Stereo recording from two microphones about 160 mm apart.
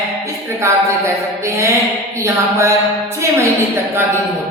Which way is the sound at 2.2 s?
15° right (ahead or behind).